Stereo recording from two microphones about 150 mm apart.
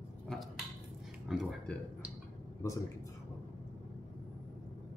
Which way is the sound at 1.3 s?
Centre (ahead or behind).